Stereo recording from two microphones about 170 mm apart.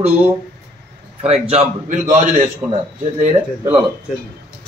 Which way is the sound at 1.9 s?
45° right (ahead or behind).